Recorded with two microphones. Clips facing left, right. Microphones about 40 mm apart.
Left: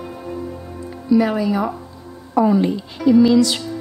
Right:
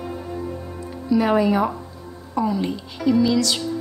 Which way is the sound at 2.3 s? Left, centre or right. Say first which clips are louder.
Left 7 dB; left.